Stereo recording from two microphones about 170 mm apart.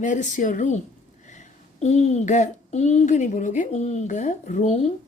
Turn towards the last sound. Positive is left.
turn(degrees=40)  # may be behind; listen again after turning